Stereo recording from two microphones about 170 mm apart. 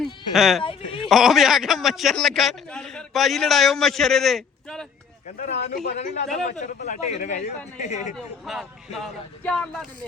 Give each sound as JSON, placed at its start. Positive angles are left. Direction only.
{"t": 0.0, "sound": "speech", "side_deg": 0}
{"t": 0.6, "sound": "speech", "side_deg": 30}
{"t": 1.0, "sound": "a man's voice", "side_deg": 0}
{"t": 5.4, "sound": "a man's voice", "side_deg": 45}
{"t": 8.1, "sound": "a man's voice", "side_deg": 0}